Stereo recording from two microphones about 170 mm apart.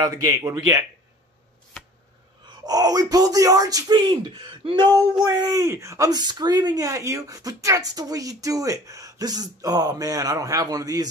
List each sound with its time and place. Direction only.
0.1 s speech: 20° right (ahead or behind)
2.4 s speech: 20° right (ahead or behind)